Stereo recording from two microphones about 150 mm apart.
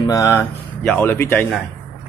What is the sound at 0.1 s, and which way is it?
Speech, 20° left (ahead or behind).